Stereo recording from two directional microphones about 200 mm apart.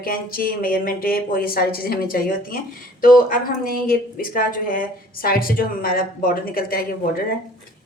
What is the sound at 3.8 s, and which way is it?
Speech, 45° left (ahead or behind).